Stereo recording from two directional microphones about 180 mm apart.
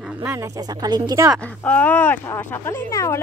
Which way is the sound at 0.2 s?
10° right (ahead or behind).